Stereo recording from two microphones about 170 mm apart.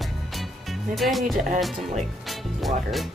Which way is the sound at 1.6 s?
Centre (ahead or behind).